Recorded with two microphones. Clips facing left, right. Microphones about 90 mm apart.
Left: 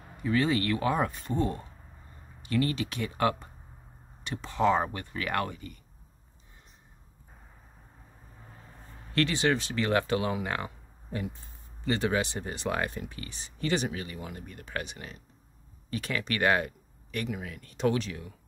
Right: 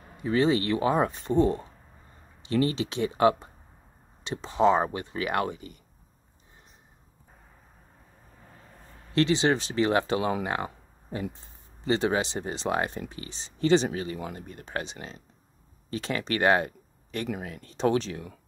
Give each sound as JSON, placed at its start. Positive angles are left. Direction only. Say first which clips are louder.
{"t": 0.2, "sound": "speech", "louder": "right 3 dB", "side_deg": -25}
{"t": 9.1, "sound": "speech", "louder": "right 3 dB", "side_deg": -20}
{"t": 10.4, "sound": "a sound", "louder": "right 3 dB", "side_deg": -20}
{"t": 11.8, "sound": "speech", "louder": "right 3 dB", "side_deg": -25}